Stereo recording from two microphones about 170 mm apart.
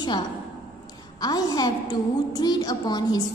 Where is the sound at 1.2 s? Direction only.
20° left (ahead or behind).